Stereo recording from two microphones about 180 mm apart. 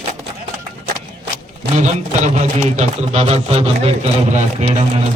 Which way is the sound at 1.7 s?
40° right (ahead or behind).